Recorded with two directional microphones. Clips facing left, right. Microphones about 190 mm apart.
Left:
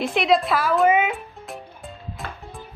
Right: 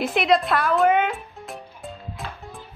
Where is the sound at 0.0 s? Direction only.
Centre (ahead or behind).